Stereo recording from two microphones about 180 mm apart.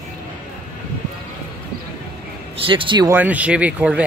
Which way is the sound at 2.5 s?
30° right (ahead or behind).